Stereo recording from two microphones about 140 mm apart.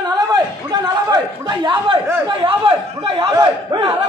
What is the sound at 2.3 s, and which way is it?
Speech, 35° right (ahead or behind).